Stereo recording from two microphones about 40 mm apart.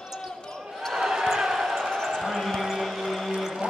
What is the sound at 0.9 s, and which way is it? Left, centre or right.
Basketball bounce, centre.